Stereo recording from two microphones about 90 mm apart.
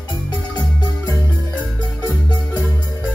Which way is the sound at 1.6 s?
20° left (ahead or behind).